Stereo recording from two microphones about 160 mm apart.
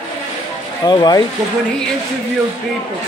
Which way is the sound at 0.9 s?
25° left (ahead or behind).